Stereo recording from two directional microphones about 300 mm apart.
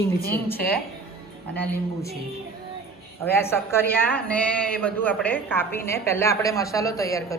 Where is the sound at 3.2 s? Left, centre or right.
Centre.